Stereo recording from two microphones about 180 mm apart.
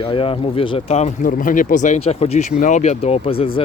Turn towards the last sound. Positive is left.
turn(degrees=30)  # may be behind; listen again after turning